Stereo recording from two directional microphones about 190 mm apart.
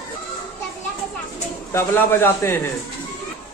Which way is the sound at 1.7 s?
10° left (ahead or behind).